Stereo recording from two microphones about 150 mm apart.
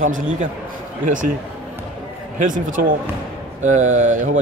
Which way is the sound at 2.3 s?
60° right (ahead or behind).